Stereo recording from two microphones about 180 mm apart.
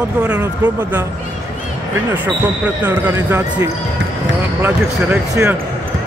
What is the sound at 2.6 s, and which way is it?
Speech, 10° right (ahead or behind).